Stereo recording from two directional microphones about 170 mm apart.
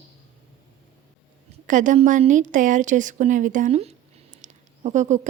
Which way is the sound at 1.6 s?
50° right (ahead or behind).